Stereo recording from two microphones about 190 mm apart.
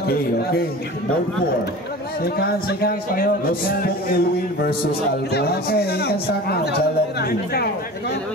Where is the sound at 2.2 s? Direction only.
55° left (ahead or behind).